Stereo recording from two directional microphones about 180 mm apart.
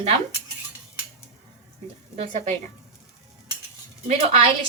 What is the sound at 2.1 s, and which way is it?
Speech, 40° right (ahead or behind).